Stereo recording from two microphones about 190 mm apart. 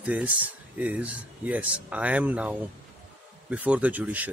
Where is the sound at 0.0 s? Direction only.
10° right (ahead or behind).